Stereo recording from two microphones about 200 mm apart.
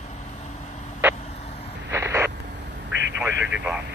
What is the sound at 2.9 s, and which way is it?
Vehicle, 65° right (ahead or behind).